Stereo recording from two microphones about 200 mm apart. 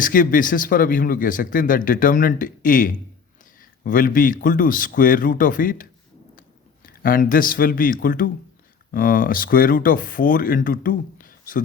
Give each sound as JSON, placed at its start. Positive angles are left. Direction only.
{"t": 0.0, "sound": "speech", "side_deg": 45}